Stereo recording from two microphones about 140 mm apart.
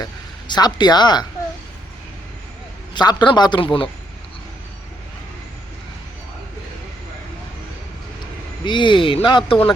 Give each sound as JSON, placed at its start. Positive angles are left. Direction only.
{"t": 0.0, "sound": "speech", "side_deg": 30}
{"t": 2.9, "sound": "speech", "side_deg": 30}
{"t": 8.6, "sound": "speech", "side_deg": 35}